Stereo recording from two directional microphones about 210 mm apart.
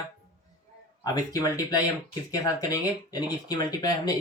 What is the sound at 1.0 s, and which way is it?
Speech, 15° left (ahead or behind).